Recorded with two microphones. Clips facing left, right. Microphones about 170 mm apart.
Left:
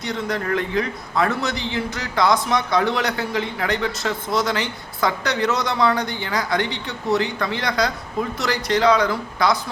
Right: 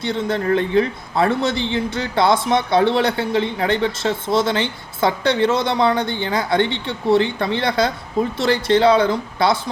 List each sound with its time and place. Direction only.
0.0 s a man's voice: 30° right (ahead or behind)